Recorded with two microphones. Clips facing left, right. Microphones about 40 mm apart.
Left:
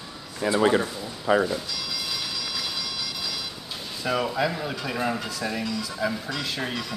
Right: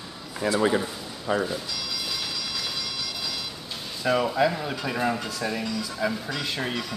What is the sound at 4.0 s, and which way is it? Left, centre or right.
Speech, centre.